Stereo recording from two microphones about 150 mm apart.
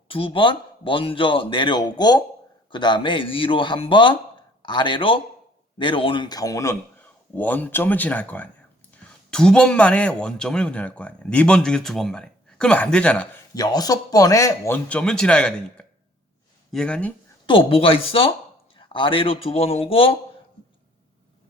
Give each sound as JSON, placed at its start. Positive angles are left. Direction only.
{"t": 0.1, "sound": "a man's voice", "side_deg": 35}
{"t": 13.5, "sound": "speech", "side_deg": 25}
{"t": 14.8, "sound": "a man's voice", "side_deg": 5}
{"t": 17.4, "sound": "a man's voice", "side_deg": 35}